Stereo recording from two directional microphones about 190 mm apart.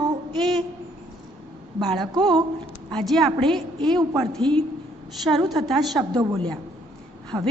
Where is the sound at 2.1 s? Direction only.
20° right (ahead or behind).